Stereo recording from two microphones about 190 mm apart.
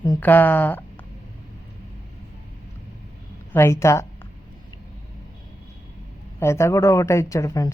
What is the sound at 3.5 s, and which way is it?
Speech, 15° left (ahead or behind).